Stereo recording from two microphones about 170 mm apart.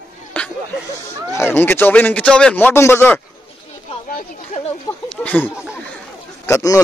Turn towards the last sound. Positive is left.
turn(degrees=15)  # may be behind; listen again after turning